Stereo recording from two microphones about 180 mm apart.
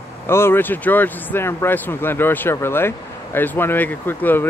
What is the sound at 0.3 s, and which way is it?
Speech, 15° left (ahead or behind).